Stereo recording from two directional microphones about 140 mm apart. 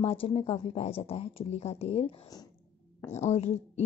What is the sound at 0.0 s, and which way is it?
A woman's voice, 45° left (ahead or behind).